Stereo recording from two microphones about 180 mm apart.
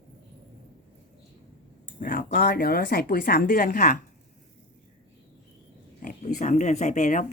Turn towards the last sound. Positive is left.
turn(degrees=45)  # may be behind; listen again after turning